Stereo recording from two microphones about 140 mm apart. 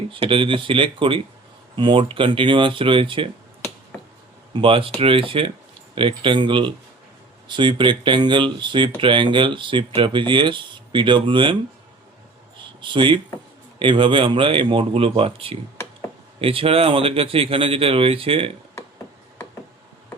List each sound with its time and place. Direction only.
0.1 s speech: 40° right (ahead or behind)
4.5 s speech: 40° right (ahead or behind)
12.8 s speech: 35° right (ahead or behind)